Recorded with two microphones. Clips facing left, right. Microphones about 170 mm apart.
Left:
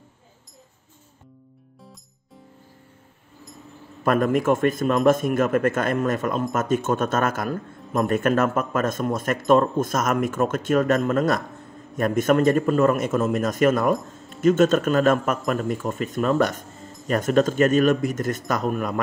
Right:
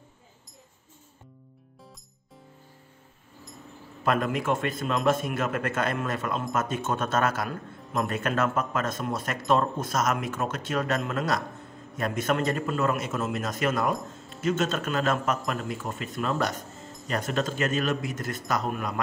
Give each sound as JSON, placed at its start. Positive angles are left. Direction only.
{"t": 4.0, "sound": "speech", "side_deg": 50}